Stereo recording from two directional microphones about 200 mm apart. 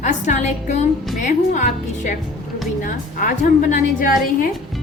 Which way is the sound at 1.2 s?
40° left (ahead or behind).